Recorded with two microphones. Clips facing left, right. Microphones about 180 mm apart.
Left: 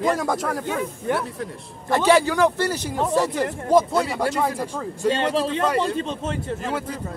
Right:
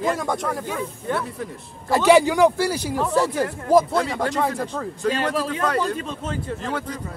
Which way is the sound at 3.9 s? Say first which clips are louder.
Even; 10° left (ahead or behind).